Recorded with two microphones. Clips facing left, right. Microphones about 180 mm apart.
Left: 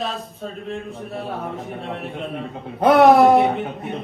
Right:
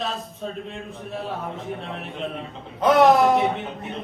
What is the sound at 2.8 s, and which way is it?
Speech, 55° left (ahead or behind).